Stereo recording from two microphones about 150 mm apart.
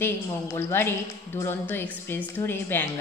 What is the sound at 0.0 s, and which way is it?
Speech, 20° left (ahead or behind).